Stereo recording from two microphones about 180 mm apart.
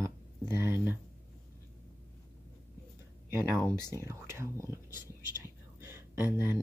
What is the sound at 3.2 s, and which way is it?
Speech, 15° right (ahead or behind).